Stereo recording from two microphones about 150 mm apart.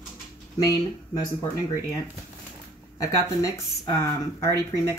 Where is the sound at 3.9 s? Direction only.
20° left (ahead or behind).